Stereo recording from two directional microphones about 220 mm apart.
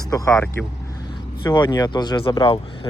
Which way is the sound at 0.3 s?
5° left (ahead or behind).